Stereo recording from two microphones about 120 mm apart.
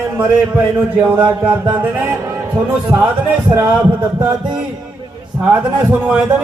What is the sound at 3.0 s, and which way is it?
Speech, 15° right (ahead or behind).